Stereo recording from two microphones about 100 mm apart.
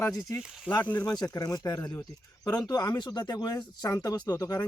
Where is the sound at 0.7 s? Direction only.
10° left (ahead or behind).